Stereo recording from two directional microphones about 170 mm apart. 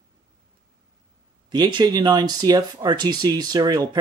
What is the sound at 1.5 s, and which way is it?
Speech, 25° right (ahead or behind).